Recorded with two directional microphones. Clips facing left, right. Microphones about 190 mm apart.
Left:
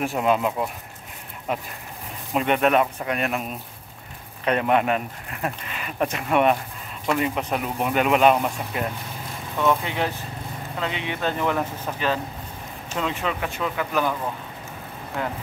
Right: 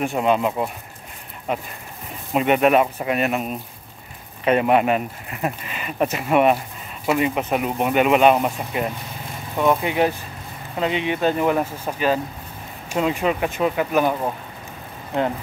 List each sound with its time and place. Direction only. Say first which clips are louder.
0.0 s speech: right 2 dB; centre (ahead or behind); by 15.3 s 20° right (ahead or behind)